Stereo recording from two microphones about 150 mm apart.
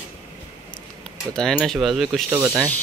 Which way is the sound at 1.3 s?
5° left (ahead or behind).